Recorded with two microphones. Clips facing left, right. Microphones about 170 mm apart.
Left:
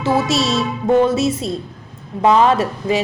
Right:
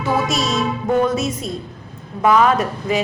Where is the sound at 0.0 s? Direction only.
30° left (ahead or behind).